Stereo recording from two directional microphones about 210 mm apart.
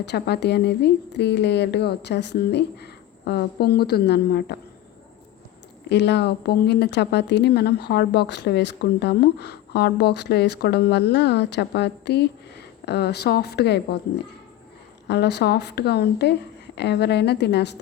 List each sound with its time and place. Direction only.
0.0 s speech: 55° left (ahead or behind)
5.9 s speech: 55° left (ahead or behind)
15.0 s speech: 55° left (ahead or behind)